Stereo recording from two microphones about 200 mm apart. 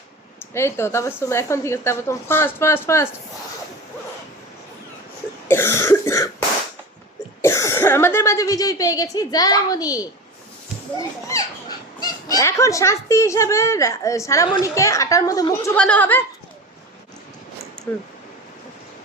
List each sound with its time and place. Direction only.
0.5 s speech: 15° left (ahead or behind)
5.5 s speech: 10° left (ahead or behind)
7.4 s speech: 15° left (ahead or behind)
11.9 s speech: 15° left (ahead or behind)